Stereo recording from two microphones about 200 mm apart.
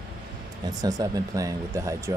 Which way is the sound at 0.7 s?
20° right (ahead or behind).